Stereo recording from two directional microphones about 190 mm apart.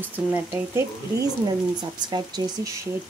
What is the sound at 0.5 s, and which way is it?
Speech, 15° right (ahead or behind).